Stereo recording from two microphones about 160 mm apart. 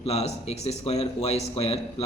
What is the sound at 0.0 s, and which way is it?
A man's voice, 40° left (ahead or behind).